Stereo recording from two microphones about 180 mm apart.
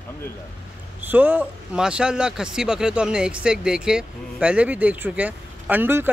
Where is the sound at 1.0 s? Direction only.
10° right (ahead or behind).